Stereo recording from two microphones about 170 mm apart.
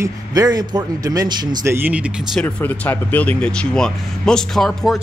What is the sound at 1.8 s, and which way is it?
Speech, 10° right (ahead or behind).